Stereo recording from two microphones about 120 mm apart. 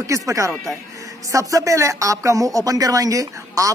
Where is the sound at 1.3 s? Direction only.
25° right (ahead or behind).